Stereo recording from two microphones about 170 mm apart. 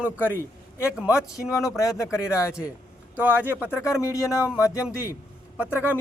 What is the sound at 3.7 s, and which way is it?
Speech, 20° left (ahead or behind).